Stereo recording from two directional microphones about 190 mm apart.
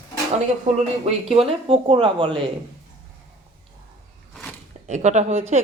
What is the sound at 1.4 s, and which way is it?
Speech, 30° right (ahead or behind).